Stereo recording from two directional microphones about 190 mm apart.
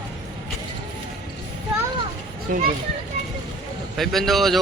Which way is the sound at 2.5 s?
45° right (ahead or behind).